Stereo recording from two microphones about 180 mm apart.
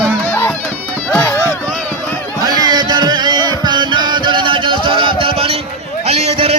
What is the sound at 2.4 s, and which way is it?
Music, 20° right (ahead or behind).